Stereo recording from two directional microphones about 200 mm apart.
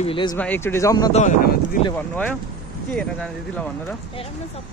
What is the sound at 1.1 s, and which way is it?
Speech, 35° left (ahead or behind).